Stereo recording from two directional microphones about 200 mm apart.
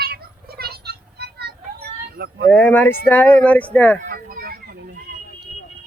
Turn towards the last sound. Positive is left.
turn(degrees=-50)  # may be behind; listen again after turning